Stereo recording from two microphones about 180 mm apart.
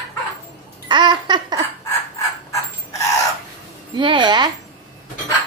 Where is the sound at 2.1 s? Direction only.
15° left (ahead or behind).